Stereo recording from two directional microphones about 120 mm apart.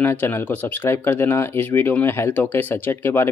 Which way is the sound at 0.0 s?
15° left (ahead or behind).